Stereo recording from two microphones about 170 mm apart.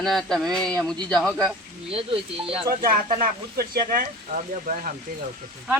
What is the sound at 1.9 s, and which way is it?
Speech, 30° right (ahead or behind).